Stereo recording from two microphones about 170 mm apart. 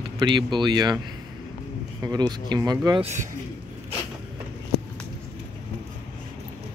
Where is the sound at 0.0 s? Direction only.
30° right (ahead or behind).